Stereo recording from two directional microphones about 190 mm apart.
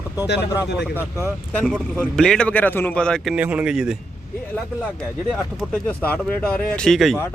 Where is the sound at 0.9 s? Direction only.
10° right (ahead or behind).